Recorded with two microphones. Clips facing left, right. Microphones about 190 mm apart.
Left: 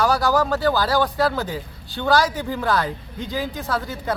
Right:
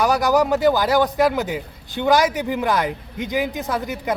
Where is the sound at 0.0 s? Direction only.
20° right (ahead or behind).